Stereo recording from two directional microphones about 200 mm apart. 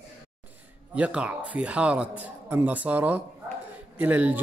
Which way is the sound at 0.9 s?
5° right (ahead or behind).